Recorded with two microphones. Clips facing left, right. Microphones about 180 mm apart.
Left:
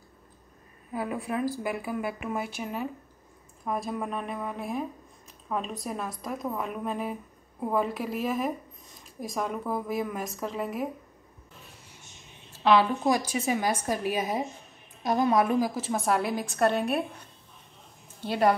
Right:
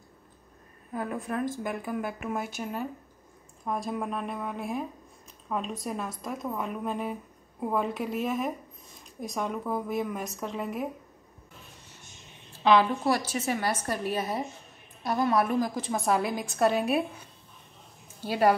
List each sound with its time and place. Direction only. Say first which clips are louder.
0.9 s a woman's voice: left 1 dB; 5° left (ahead or behind)
12.5 s a sound: even; centre (ahead or behind)
13.0 s a woman's voice: left 1 dB; 15° left (ahead or behind)
15.7 s speech: even; centre (ahead or behind)
18.2 s a woman's voice: even; 5° right (ahead or behind)